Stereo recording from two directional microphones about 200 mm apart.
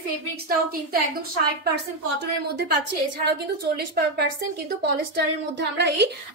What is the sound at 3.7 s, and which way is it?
A woman's voice, 50° right (ahead or behind).